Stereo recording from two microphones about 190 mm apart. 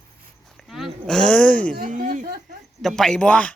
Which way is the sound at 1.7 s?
45° right (ahead or behind).